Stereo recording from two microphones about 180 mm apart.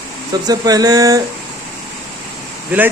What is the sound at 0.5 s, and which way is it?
Speech, 20° right (ahead or behind).